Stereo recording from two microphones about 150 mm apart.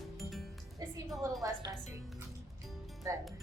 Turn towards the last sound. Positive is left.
turn(degrees=-20)  # may be behind; listen again after turning